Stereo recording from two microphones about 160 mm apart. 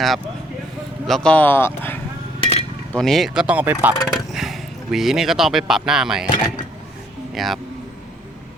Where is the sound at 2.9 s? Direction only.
Centre (ahead or behind).